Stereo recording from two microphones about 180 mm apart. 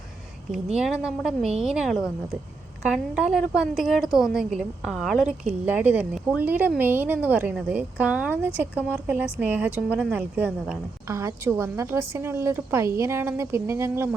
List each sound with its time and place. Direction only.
1.0 s a woman's voice: 5° right (ahead or behind)